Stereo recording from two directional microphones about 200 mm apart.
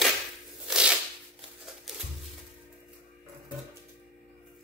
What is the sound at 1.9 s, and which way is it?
Music, centre (ahead or behind).